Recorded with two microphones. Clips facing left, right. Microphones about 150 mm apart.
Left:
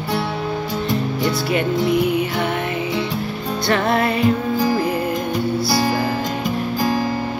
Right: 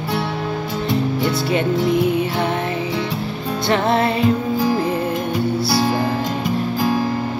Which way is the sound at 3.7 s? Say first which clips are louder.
Right 1 dB; 25° right (ahead or behind).